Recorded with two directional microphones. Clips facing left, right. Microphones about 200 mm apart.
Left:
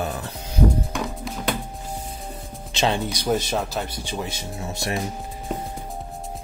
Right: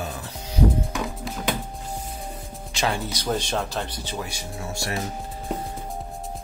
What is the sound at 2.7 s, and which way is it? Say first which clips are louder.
Speech: left 3 dB; 20° left (ahead or behind).